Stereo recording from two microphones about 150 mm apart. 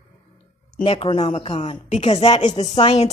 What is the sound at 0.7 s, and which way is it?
Speech, 40° left (ahead or behind).